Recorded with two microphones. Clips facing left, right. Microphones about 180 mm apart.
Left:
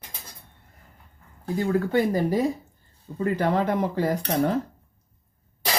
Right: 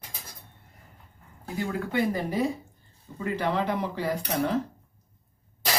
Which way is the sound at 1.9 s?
40° left (ahead or behind).